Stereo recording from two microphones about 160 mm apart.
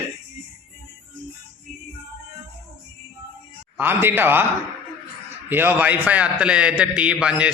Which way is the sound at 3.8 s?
15° right (ahead or behind).